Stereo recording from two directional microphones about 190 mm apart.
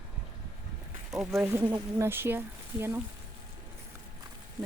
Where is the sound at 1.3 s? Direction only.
10° right (ahead or behind).